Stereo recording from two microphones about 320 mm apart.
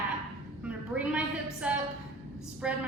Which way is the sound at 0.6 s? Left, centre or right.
Centre.